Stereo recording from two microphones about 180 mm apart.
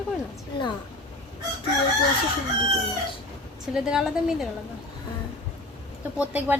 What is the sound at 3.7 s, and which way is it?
Speech, 5° right (ahead or behind).